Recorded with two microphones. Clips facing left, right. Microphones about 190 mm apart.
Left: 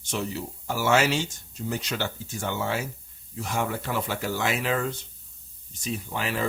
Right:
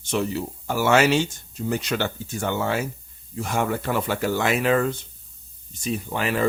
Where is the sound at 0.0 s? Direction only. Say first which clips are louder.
Right 6 dB; 65° right (ahead or behind).